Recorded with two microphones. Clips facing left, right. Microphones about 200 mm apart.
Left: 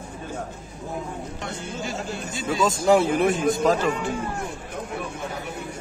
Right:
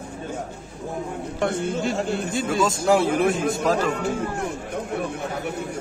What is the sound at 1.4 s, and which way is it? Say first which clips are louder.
Speech: right 12 dB; 60° right (ahead or behind).